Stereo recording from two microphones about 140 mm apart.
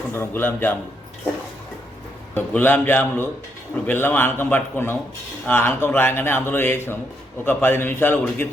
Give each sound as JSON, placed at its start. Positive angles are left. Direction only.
{"t": 0.1, "sound": "speech", "side_deg": 15}
{"t": 2.3, "sound": "speech", "side_deg": 10}